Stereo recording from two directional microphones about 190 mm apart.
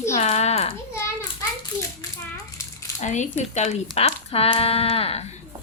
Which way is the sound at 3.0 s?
40° left (ahead or behind).